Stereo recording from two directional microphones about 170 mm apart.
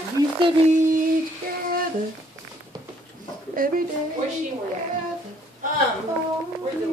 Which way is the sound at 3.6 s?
55° right (ahead or behind).